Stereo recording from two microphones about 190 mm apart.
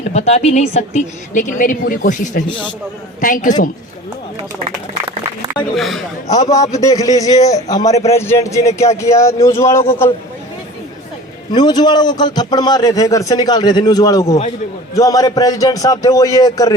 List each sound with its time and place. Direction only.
0.1 s a woman's voice: 35° left (ahead or behind)
5.5 s speech: centre (ahead or behind)
6.3 s a man's voice: 20° left (ahead or behind)
11.5 s a man's voice: 20° left (ahead or behind)